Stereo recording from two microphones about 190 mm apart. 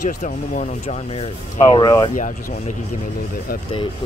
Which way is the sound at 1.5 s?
20° left (ahead or behind).